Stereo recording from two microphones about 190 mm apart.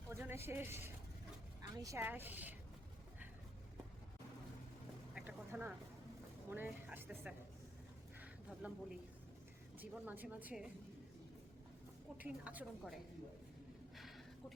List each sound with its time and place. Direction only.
0.1 s speech: 15° right (ahead or behind)
5.1 s a sound: 10° right (ahead or behind)
6.5 s speech: 10° right (ahead or behind)
8.2 s a sound: 5° right (ahead or behind)
9.7 s speech: 10° right (ahead or behind)
12.1 s speech: 10° right (ahead or behind)